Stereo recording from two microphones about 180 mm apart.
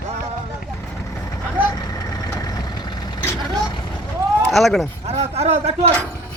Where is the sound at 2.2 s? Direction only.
20° left (ahead or behind).